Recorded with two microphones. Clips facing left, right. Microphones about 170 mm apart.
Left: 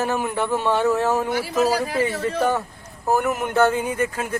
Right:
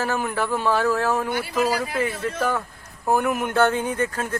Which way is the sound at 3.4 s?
15° left (ahead or behind).